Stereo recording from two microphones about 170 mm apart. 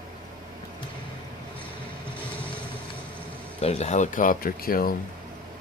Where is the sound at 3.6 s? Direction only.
40° left (ahead or behind); by 5.0 s 60° left (ahead or behind).